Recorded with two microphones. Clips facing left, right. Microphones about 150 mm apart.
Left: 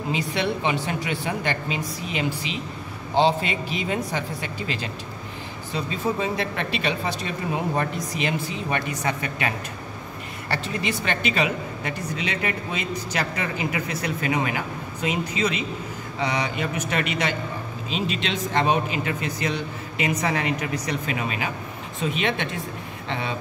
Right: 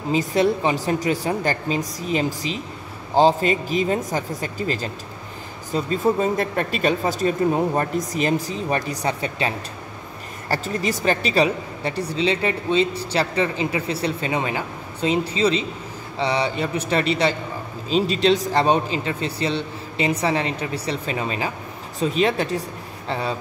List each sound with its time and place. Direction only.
0.1 s speech: 40° right (ahead or behind)
10.5 s speech: 40° right (ahead or behind)